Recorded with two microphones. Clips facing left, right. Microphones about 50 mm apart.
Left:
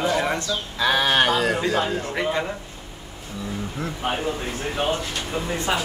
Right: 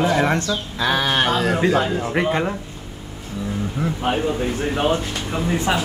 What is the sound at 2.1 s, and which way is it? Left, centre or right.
Speech, right.